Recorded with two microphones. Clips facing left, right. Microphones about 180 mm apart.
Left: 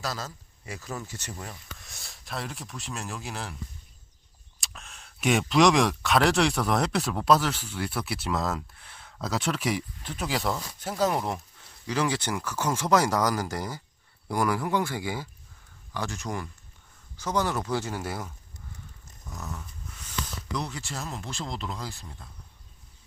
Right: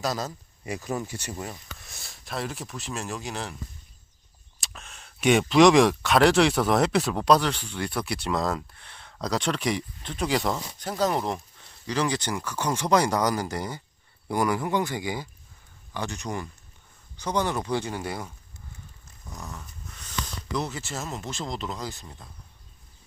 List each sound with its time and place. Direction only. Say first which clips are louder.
0.0 s speech: right 5 dB; 20° right (ahead or behind)
1.8 s speech: right 1 dB; centre (ahead or behind)
4.6 s speech: right 1 dB; centre (ahead or behind)
10.5 s speech: right 1 dB; 20° right (ahead or behind)
10.8 s speech: even; 5° left (ahead or behind)
14.8 s speech: right 1 dB; 15° right (ahead or behind)
16.0 s speech: right 1 dB; centre (ahead or behind)
19.3 s speech: left 1 dB; centre (ahead or behind)